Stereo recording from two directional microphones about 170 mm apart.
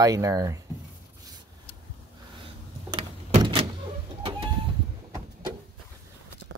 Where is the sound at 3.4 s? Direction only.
35° right (ahead or behind).